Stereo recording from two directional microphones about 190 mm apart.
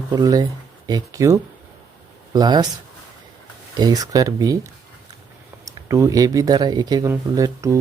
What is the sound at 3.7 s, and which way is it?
Speech, 20° right (ahead or behind).